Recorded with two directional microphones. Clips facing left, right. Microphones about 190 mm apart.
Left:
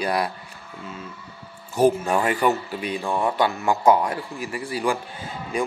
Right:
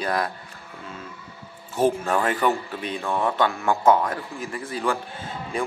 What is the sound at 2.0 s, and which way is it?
Speech, 10° left (ahead or behind).